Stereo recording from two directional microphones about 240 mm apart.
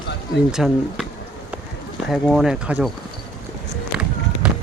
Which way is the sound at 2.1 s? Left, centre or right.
Centre.